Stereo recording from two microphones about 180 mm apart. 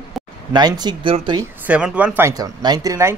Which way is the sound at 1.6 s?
5° right (ahead or behind).